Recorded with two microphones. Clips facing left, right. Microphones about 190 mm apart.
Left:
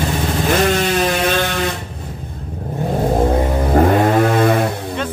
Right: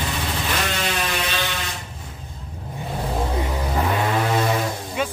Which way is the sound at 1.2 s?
55° left (ahead or behind).